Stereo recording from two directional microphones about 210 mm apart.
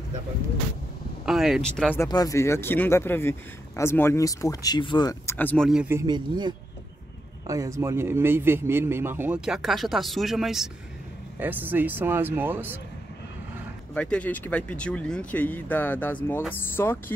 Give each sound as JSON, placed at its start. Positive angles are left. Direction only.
{"t": 1.2, "sound": "speech", "side_deg": 0}
{"t": 2.0, "sound": "speech", "side_deg": 15}
{"t": 5.7, "sound": "a man's voice", "side_deg": -5}
{"t": 13.9, "sound": "speech", "side_deg": 5}